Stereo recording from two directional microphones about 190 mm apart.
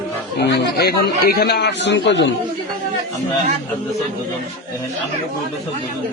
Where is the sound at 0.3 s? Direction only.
60° left (ahead or behind).